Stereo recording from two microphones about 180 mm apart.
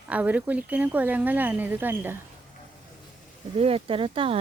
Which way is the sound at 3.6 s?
30° right (ahead or behind).